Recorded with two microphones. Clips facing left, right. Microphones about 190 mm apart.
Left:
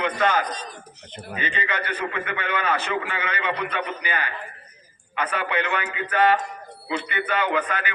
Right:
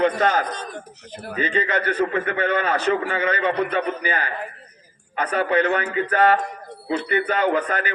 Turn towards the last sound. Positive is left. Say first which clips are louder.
# right 4 dB
turn(degrees=-40)  # may be behind; listen again after turning